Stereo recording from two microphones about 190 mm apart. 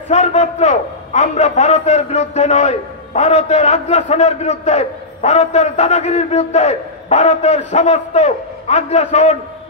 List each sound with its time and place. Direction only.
0.1 s a man's voice: 35° left (ahead or behind)